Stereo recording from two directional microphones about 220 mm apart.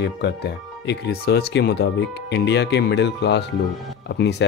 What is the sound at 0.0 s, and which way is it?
Speech, 50° left (ahead or behind).